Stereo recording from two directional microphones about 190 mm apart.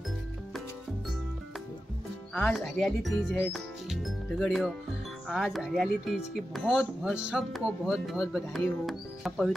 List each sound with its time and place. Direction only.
2.3 s speech: 5° left (ahead or behind)